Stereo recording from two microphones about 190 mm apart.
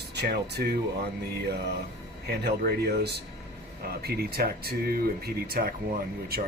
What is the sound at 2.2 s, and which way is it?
Speech, 55° right (ahead or behind).